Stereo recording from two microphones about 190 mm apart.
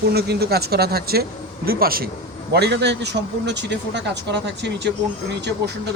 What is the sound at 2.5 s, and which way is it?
Speech, 60° right (ahead or behind).